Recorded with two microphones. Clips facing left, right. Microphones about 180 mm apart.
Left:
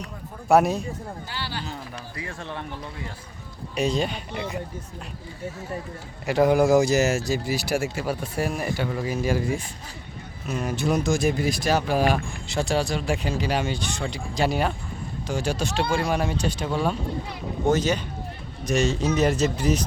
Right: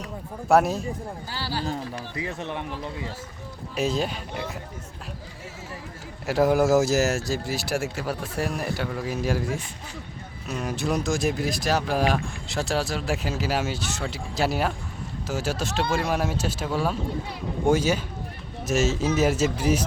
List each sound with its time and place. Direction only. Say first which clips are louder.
0.4 s speech: left 1 dB; centre (ahead or behind)
1.3 s speech: right 4 dB; 35° right (ahead or behind)
2.1 s speech: right 3 dB; 20° right (ahead or behind)
3.8 s speech: left 1 dB; centre (ahead or behind)
6.2 s a man's voice: left 1 dB; centre (ahead or behind)